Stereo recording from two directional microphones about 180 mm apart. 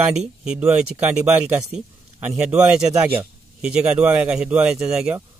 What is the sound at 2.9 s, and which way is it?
Speech, 15° right (ahead or behind).